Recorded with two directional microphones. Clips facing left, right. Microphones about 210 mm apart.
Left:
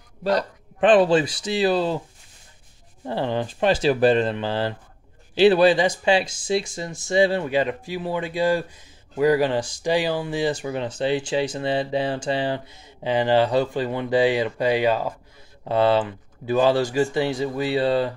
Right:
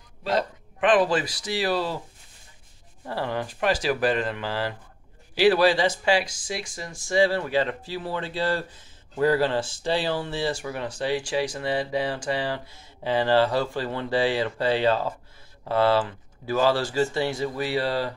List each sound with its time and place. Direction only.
0.7 s speech: 30° left (ahead or behind)
3.1 s speech: 25° left (ahead or behind)